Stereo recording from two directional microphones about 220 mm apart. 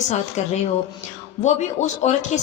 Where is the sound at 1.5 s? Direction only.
30° left (ahead or behind).